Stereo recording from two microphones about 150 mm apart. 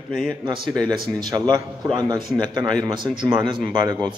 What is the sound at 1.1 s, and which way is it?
A man's voice, 25° right (ahead or behind).